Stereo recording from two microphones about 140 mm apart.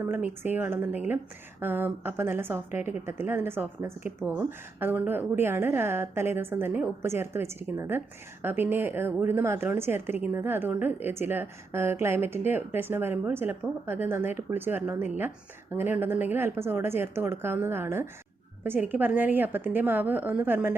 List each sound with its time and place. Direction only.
0.0 s a woman's voice: 15° right (ahead or behind)